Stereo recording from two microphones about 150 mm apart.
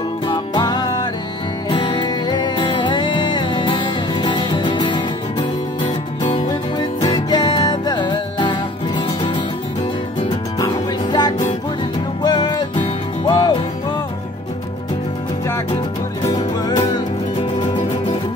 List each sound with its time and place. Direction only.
0.3 s music: 30° left (ahead or behind)
6.2 s music: 30° left (ahead or behind)
10.6 s music: 30° left (ahead or behind)
16.3 s music: 30° left (ahead or behind)